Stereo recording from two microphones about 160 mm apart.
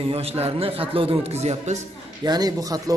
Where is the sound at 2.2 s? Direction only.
25° right (ahead or behind).